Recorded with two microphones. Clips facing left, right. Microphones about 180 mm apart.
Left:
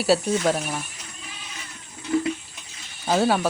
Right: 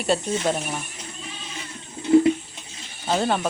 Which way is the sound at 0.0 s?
5° left (ahead or behind).